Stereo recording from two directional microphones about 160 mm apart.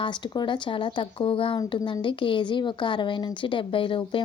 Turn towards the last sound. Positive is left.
turn(degrees=35)  # may be behind; listen again after turning